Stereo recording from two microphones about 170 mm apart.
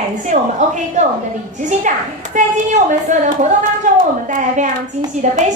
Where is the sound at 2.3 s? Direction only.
45° right (ahead or behind).